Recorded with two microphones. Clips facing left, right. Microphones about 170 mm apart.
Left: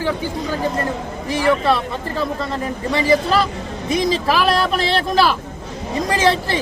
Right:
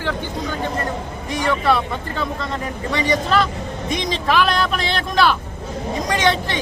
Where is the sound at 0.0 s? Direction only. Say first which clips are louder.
Left 3 dB; 5° left (ahead or behind).